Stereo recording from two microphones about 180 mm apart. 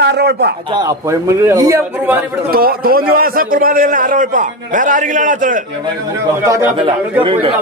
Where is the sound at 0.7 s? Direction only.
15° right (ahead or behind).